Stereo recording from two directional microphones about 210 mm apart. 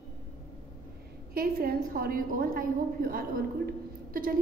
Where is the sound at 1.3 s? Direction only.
45° right (ahead or behind).